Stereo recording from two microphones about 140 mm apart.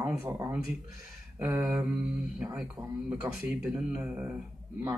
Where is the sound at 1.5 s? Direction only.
5° right (ahead or behind).